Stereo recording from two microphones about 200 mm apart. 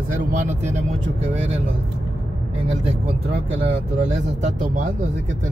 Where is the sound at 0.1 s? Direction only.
40° right (ahead or behind).